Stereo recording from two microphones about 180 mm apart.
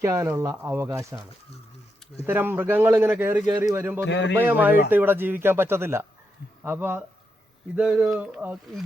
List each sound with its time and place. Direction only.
0.0 s speech: 15° right (ahead or behind)
2.2 s speech: 10° right (ahead or behind)
4.0 s a man's voice: 75° left (ahead or behind)
4.4 s speech: 10° right (ahead or behind)